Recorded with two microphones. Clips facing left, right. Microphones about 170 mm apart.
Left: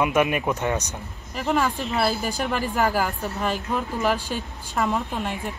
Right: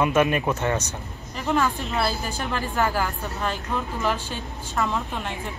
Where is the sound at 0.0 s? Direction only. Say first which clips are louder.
Right 1 dB; 10° left (ahead or behind).